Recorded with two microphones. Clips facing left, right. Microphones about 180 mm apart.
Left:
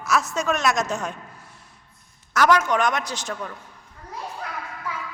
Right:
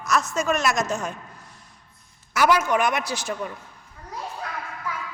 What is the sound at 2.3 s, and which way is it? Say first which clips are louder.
A man's voice: left 1 dB; 10° right (ahead or behind).